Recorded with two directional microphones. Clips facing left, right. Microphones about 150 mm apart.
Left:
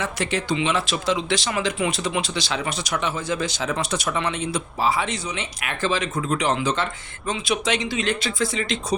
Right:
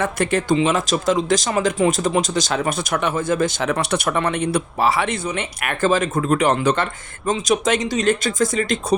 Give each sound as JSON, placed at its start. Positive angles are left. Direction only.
{"t": 0.0, "sound": "speech", "side_deg": -50}
{"t": 7.3, "sound": "speech", "side_deg": -45}